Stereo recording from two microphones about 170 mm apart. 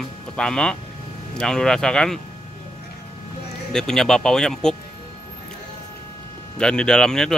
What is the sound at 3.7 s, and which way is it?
A man's voice, 5° left (ahead or behind).